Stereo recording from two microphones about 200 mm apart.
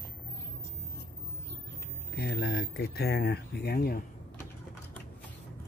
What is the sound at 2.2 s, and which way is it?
Speech, 55° left (ahead or behind).